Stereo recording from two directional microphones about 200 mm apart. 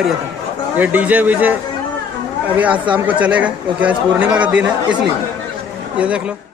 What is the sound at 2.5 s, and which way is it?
Speech, 5° right (ahead or behind).